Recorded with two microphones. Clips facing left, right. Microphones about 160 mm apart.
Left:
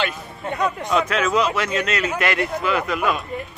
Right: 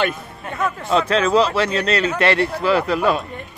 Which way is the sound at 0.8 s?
30° right (ahead or behind).